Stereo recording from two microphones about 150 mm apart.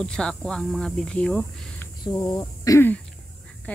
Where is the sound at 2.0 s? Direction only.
30° left (ahead or behind).